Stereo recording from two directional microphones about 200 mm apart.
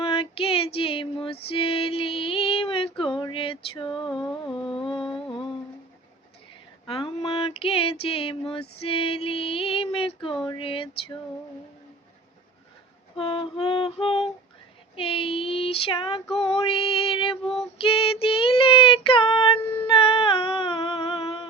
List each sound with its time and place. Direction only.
0.0 s female singing: 25° left (ahead or behind)
6.8 s a sound: 25° left (ahead or behind)
8.8 s female singing: 30° left (ahead or behind)
10.4 s a sound: 25° left (ahead or behind)
13.1 s music: 25° left (ahead or behind)
14.9 s child singing: 25° left (ahead or behind)